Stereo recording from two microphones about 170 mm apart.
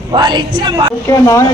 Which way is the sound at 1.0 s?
20° left (ahead or behind).